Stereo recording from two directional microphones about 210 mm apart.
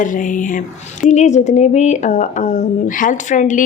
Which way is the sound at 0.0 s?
40° left (ahead or behind).